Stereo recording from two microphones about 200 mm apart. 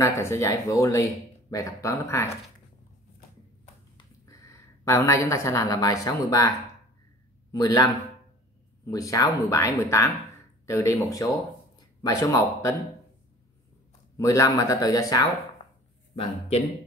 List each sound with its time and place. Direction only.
0.0 s speech: 15° left (ahead or behind)
3.9 s a woman's voice: 15° left (ahead or behind)
7.5 s speech: 20° left (ahead or behind)
14.1 s speech: 15° left (ahead or behind)
16.2 s speech: 30° left (ahead or behind)